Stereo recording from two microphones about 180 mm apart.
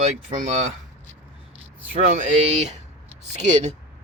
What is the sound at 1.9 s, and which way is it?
Speech, 45° right (ahead or behind).